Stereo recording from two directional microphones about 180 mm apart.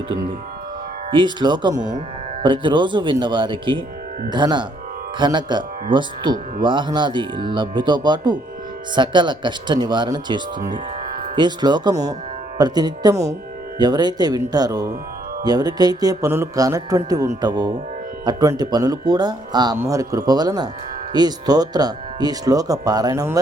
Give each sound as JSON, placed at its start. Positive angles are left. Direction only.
{"t": 1.1, "sound": "speech", "side_deg": -25}